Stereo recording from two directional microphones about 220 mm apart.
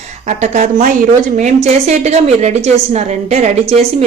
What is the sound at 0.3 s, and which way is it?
A woman's voice, 35° right (ahead or behind).